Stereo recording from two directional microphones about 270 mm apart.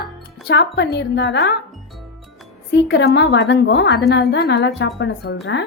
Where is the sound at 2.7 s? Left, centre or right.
Left.